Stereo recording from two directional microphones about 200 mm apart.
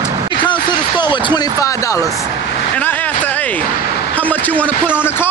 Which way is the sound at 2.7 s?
10° left (ahead or behind).